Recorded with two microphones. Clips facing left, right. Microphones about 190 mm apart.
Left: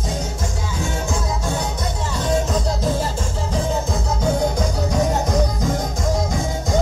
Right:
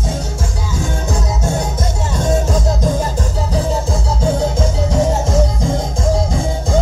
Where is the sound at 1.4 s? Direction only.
45° right (ahead or behind).